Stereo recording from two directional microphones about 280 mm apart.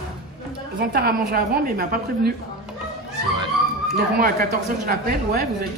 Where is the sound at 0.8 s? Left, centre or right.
Right.